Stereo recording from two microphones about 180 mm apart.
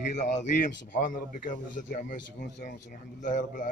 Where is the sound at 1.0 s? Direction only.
50° left (ahead or behind).